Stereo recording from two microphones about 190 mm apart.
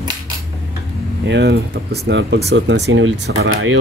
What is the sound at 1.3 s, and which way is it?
Speech, 65° right (ahead or behind).